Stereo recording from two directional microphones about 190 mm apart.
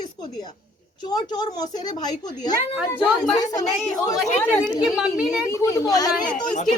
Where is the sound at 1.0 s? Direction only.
20° left (ahead or behind).